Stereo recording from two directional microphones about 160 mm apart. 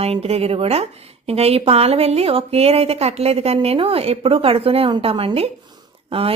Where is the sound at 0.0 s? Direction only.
40° right (ahead or behind).